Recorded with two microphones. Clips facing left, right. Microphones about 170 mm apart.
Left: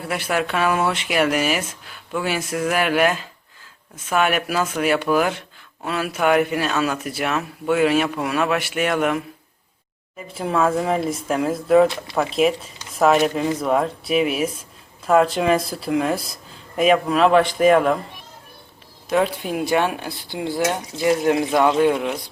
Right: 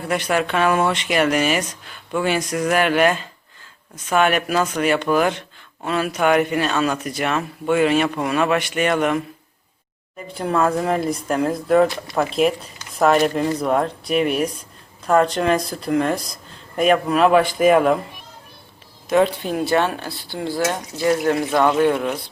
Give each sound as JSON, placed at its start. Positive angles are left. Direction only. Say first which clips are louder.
{"t": 0.0, "sound": "speech", "louder": "right 2 dB", "side_deg": 5}
{"t": 10.3, "sound": "speech", "louder": "even", "side_deg": 0}
{"t": 19.1, "sound": "speech", "louder": "right 3 dB", "side_deg": 10}